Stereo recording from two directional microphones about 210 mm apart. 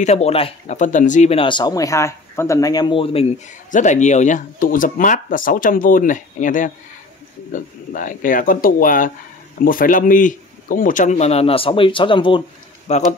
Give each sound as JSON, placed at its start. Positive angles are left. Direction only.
{"t": 0.0, "sound": "speech", "side_deg": 30}